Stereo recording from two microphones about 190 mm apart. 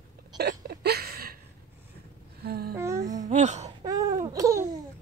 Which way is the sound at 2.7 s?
15° right (ahead or behind).